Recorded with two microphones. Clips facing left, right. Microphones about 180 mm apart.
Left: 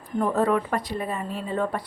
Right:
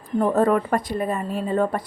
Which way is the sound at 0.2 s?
45° right (ahead or behind).